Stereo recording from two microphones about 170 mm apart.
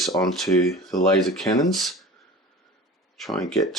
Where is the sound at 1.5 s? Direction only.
20° left (ahead or behind).